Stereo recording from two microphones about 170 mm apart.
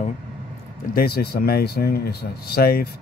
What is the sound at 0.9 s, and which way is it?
Speech, 65° left (ahead or behind).